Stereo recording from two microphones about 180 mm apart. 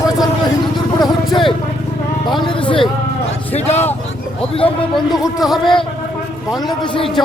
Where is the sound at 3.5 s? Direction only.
35° left (ahead or behind).